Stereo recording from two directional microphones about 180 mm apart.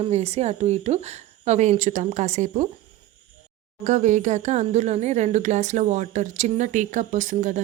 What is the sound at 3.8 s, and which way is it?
A woman's voice, 40° right (ahead or behind).